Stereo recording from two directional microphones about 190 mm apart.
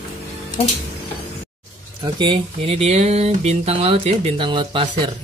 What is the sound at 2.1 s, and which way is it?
Speech, 25° right (ahead or behind).